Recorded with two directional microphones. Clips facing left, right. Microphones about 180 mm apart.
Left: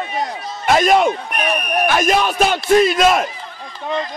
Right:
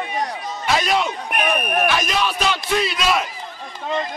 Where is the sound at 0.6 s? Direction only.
50° left (ahead or behind).